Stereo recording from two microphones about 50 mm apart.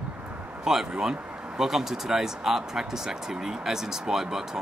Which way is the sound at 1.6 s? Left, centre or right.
Centre.